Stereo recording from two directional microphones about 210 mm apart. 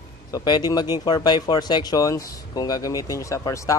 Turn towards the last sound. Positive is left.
turn(degrees=15)  # may be behind; listen again after turning